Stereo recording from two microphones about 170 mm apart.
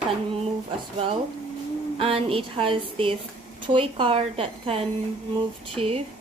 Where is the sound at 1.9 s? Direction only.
30° right (ahead or behind).